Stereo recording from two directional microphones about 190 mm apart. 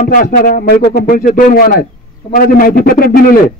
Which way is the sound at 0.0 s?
45° left (ahead or behind).